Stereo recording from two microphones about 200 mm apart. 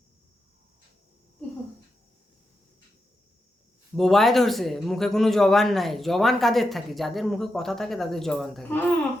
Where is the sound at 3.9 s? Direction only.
Centre (ahead or behind).